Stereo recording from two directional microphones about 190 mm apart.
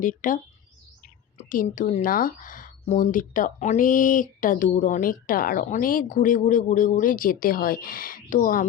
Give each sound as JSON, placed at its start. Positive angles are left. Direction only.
{"t": 0.0, "sound": "speech", "side_deg": 45}
{"t": 1.5, "sound": "speech", "side_deg": 45}